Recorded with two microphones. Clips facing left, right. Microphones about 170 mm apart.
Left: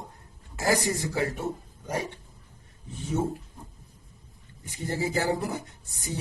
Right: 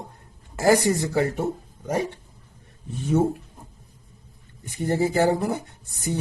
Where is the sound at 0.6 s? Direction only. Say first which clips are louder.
Right 7 dB; 65° right (ahead or behind).